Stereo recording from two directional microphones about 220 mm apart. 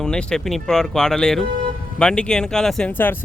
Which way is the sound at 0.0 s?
5° left (ahead or behind).